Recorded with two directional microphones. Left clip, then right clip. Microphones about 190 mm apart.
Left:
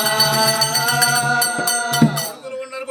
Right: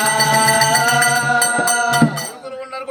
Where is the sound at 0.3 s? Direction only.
45° left (ahead or behind).